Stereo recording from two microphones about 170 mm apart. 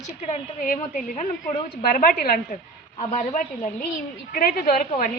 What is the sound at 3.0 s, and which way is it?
Speech, 40° left (ahead or behind).